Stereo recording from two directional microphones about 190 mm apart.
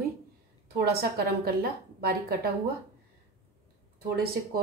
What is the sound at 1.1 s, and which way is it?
A woman's voice, 55° right (ahead or behind).